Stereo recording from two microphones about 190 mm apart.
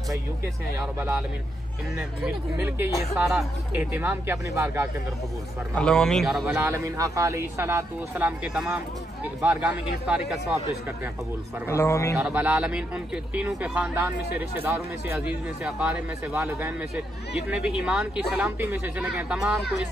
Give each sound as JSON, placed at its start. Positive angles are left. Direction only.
{"t": 0.7, "sound": "speech", "side_deg": -15}
{"t": 3.9, "sound": "speech", "side_deg": -10}
{"t": 5.8, "sound": "speech", "side_deg": 5}
{"t": 11.6, "sound": "a man's voice", "side_deg": 15}
{"t": 12.2, "sound": "speech", "side_deg": -5}